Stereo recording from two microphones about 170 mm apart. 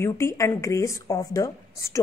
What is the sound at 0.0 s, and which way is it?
A woman's voice, 15° left (ahead or behind).